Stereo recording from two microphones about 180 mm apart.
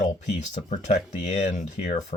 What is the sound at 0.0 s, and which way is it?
Speech, 45° left (ahead or behind).